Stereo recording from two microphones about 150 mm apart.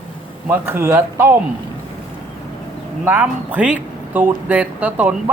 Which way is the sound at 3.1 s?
10° right (ahead or behind).